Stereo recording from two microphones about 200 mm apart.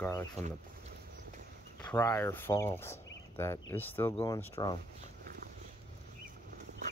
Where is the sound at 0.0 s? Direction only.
15° left (ahead or behind).